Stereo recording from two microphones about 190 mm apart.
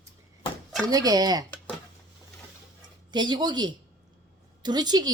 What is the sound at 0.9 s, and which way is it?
Speech, 20° right (ahead or behind).